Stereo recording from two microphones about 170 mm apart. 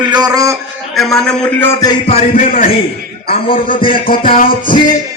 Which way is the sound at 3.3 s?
55° left (ahead or behind).